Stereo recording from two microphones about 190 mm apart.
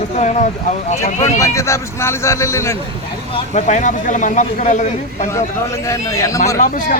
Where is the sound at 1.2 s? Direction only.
15° left (ahead or behind).